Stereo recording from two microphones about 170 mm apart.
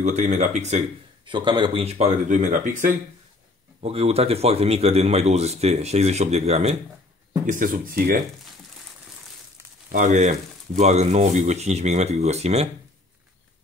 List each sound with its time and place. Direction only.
0.0 s speech: 45° right (ahead or behind)
1.2 s a man's voice: 30° right (ahead or behind); by 2.9 s 50° right (ahead or behind)
3.8 s a man's voice: 35° right (ahead or behind)
7.4 s speech: 55° right (ahead or behind)
9.8 s a man's voice: 45° right (ahead or behind)